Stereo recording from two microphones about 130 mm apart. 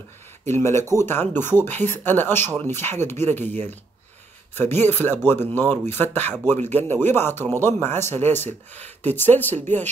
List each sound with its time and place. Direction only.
0.5 s speech: 20° left (ahead or behind)
4.6 s speech: 15° left (ahead or behind)